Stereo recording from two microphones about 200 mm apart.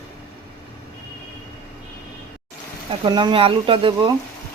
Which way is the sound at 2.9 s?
20° right (ahead or behind).